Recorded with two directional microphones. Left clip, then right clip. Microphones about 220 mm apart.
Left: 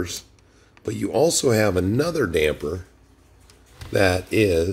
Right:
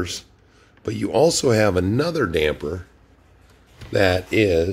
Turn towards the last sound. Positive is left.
turn(degrees=5)  # may be behind; listen again after turning